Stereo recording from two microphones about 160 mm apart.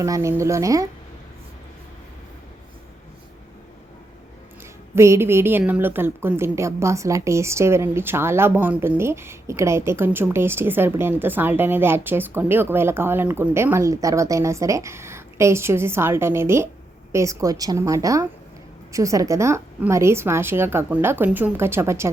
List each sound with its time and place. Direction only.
0.0 s a woman's voice: 20° right (ahead or behind)
4.9 s a woman's voice: 15° right (ahead or behind)